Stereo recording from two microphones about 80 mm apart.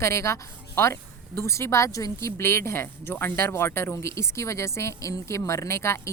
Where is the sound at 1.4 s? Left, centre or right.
Left.